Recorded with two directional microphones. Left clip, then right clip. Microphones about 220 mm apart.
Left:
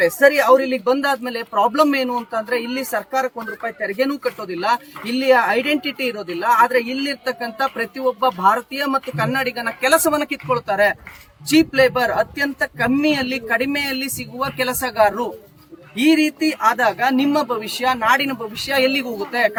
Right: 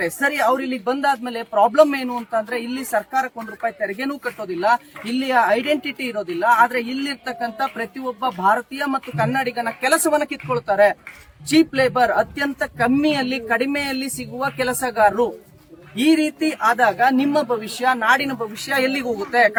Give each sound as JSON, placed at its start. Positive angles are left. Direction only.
{"t": 0.0, "sound": "speech", "side_deg": 5}